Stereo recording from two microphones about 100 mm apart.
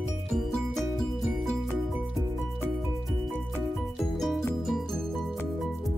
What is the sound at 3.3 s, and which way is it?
Music, 20° left (ahead or behind).